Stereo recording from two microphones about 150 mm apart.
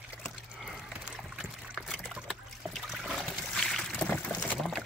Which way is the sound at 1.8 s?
Centre (ahead or behind).